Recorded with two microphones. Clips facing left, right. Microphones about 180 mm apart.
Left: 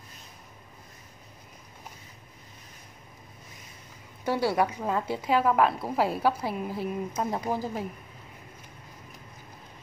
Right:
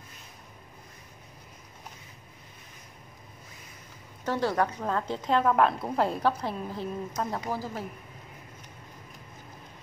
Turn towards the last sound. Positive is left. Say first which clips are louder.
# left 3 dB
turn(degrees=15)  # may be behind; listen again after turning